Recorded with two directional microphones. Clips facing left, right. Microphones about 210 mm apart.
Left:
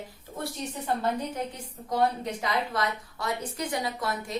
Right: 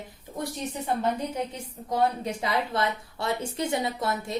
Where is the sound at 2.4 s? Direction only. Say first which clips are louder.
Right 2 dB; 25° right (ahead or behind).